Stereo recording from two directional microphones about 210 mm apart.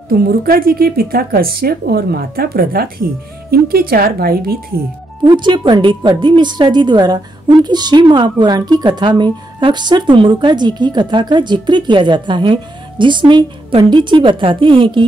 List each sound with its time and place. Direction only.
0.1 s speech: 45° right (ahead or behind)
5.2 s a woman's voice: 20° right (ahead or behind)